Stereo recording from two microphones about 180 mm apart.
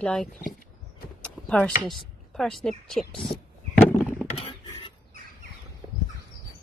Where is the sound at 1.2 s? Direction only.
5° left (ahead or behind).